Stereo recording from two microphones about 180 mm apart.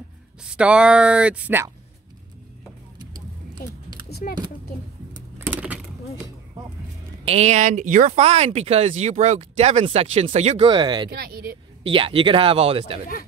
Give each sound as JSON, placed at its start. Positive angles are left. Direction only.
{"t": 0.4, "sound": "speech", "side_deg": -5}
{"t": 3.6, "sound": "speech", "side_deg": 55}
{"t": 5.5, "sound": "a sound", "side_deg": -10}
{"t": 7.2, "sound": "speech", "side_deg": -35}
{"t": 10.7, "sound": "a man's voice", "side_deg": -25}
{"t": 11.1, "sound": "speech", "side_deg": -60}
{"t": 11.8, "sound": "a man's voice", "side_deg": -30}